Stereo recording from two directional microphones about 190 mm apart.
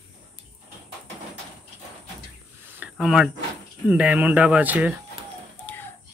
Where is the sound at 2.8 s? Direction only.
5° right (ahead or behind).